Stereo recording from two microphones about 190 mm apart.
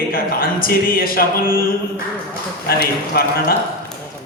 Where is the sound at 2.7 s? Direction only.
50° left (ahead or behind).